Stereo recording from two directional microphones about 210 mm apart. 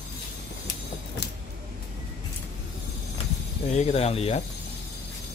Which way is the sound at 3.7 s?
30° left (ahead or behind).